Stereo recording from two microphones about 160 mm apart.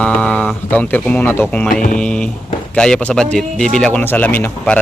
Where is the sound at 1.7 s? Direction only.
60° left (ahead or behind).